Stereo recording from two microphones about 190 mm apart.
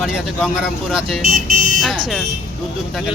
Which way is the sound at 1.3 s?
50° right (ahead or behind).